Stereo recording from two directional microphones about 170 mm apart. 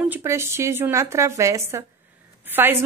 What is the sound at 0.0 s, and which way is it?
A woman's voice, 15° right (ahead or behind).